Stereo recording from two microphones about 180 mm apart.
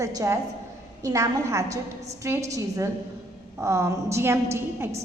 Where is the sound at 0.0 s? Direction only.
20° right (ahead or behind).